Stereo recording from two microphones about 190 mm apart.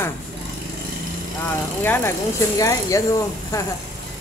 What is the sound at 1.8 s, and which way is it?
Speech, 10° left (ahead or behind).